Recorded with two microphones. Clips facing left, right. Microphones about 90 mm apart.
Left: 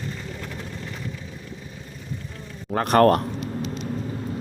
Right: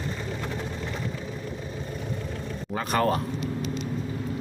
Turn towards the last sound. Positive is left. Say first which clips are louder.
# left 8 dB
turn(degrees=60)  # may be behind; listen again after turning